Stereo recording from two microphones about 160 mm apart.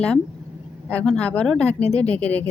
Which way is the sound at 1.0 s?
10° left (ahead or behind).